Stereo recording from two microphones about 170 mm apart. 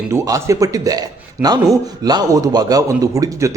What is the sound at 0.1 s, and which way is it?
A man's voice, 15° right (ahead or behind).